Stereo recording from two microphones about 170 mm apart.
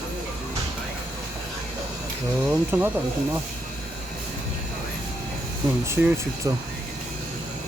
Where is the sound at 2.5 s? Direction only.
10° right (ahead or behind).